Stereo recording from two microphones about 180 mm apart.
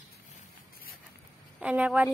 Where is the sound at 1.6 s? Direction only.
5° right (ahead or behind).